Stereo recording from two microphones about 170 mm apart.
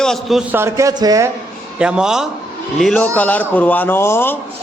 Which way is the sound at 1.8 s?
5° right (ahead or behind).